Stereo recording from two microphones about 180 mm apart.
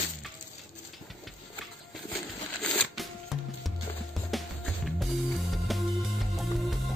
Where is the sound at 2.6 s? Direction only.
5° left (ahead or behind).